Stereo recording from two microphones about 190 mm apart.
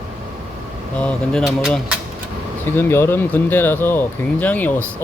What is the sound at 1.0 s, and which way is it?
Speech, centre (ahead or behind).